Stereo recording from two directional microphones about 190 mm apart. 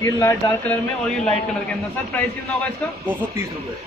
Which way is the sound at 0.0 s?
15° left (ahead or behind).